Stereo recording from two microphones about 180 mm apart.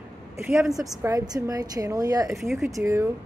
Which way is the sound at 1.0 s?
20° right (ahead or behind).